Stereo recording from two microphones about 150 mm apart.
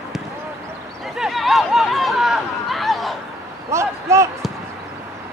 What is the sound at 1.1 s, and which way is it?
Chatter, centre (ahead or behind).